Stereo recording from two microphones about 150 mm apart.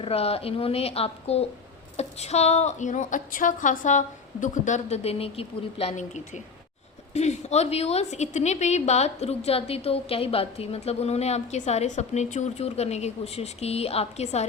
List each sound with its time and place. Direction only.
0.0 s a woman's voice: 40° left (ahead or behind)